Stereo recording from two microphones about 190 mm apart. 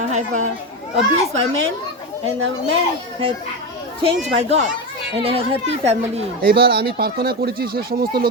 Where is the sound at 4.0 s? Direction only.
25° right (ahead or behind).